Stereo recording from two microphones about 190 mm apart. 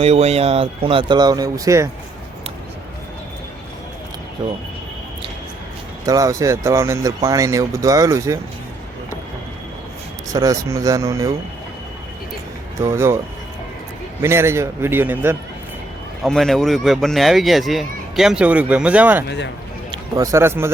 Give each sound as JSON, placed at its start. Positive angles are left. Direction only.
{"t": 0.0, "sound": "speech", "side_deg": -35}
{"t": 4.4, "sound": "speech", "side_deg": -25}
{"t": 6.1, "sound": "speech", "side_deg": -15}
{"t": 10.3, "sound": "speech", "side_deg": -15}
{"t": 12.8, "sound": "speech", "side_deg": -15}
{"t": 14.2, "sound": "speech", "side_deg": -15}
{"t": 16.2, "sound": "a man's voice", "side_deg": 0}